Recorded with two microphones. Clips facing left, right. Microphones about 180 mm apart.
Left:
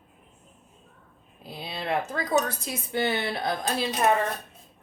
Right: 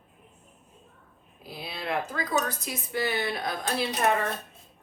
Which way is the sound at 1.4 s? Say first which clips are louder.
Left 2 dB; 25° left (ahead or behind).